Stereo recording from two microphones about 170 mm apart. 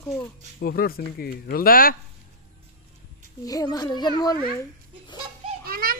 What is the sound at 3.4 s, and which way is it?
Speech, 20° left (ahead or behind).